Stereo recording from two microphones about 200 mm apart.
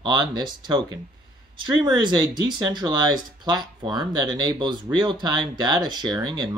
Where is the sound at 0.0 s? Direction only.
20° right (ahead or behind).